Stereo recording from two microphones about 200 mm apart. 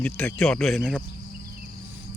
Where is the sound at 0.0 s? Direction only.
5° left (ahead or behind).